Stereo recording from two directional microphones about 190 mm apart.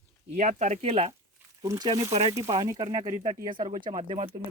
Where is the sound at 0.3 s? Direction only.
40° right (ahead or behind).